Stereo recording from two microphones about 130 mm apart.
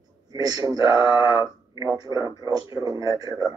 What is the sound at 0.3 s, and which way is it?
Speech, 30° right (ahead or behind).